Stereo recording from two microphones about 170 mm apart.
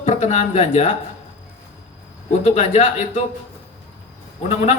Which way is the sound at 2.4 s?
45° left (ahead or behind).